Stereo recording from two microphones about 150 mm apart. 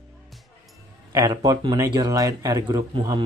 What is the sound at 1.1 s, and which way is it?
A man's voice, 25° right (ahead or behind).